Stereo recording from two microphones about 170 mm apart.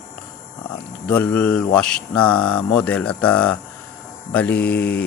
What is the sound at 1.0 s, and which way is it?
Mantra, 10° left (ahead or behind).